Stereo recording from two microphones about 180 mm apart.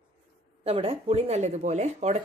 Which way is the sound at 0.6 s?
30° right (ahead or behind).